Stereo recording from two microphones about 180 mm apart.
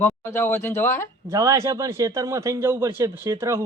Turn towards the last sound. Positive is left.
turn(degrees=-15)  # may be behind; listen again after turning